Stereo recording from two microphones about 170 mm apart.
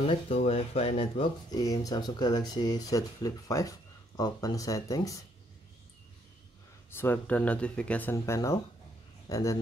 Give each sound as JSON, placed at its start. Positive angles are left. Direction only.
{"t": 0.0, "sound": "speech", "side_deg": 35}
{"t": 6.9, "sound": "speech", "side_deg": 10}